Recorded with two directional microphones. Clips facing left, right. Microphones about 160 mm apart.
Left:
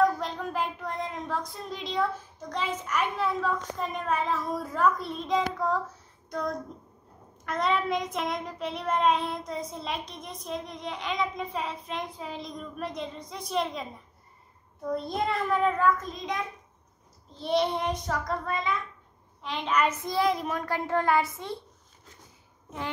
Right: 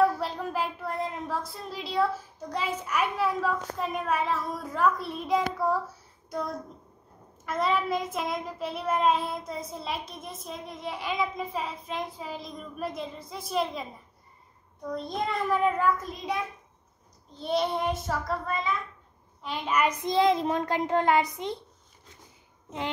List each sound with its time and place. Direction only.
0.0 s speech: 5° right (ahead or behind)
7.4 s child singing: centre (ahead or behind)
14.9 s child singing: 5° left (ahead or behind)
19.4 s a child's voice: 5° right (ahead or behind)